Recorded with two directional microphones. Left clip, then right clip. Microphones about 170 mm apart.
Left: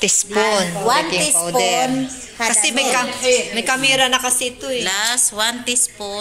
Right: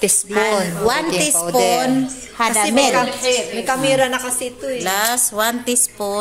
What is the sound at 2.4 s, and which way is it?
Speech, 90° right.